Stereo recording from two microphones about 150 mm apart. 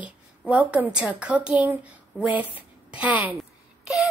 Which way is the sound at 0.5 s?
10° right (ahead or behind).